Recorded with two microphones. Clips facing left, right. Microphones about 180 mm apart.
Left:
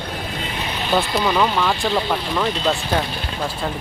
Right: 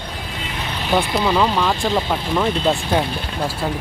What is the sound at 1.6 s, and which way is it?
Speech, centre (ahead or behind).